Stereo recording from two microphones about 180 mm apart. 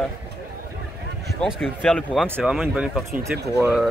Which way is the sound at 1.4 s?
Centre (ahead or behind).